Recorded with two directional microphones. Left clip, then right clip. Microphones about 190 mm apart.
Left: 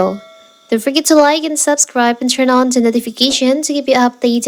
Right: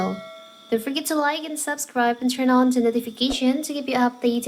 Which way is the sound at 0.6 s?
45° left (ahead or behind).